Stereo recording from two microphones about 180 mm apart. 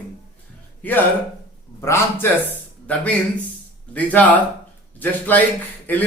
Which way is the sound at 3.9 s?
10° left (ahead or behind).